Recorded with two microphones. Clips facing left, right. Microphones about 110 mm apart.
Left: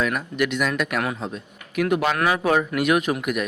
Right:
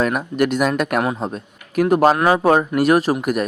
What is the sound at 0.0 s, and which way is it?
A man's voice, 40° right (ahead or behind).